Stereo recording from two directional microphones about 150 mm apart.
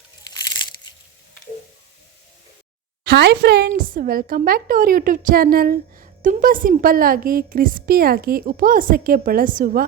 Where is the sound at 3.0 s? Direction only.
90° right.